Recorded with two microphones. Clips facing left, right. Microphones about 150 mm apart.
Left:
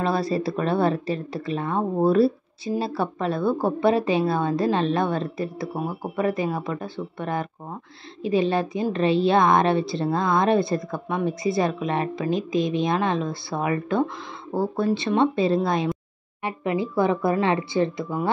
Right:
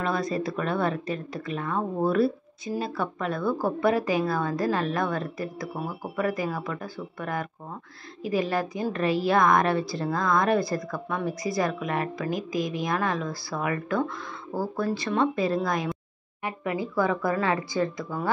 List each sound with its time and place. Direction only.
0.0 s speech: 30° left (ahead or behind)